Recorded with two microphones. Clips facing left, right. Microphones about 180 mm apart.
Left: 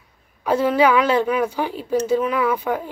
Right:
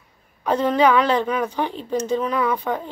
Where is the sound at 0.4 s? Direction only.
10° left (ahead or behind).